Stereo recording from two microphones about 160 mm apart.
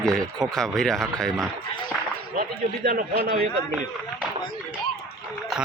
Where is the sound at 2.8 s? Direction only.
65° right (ahead or behind).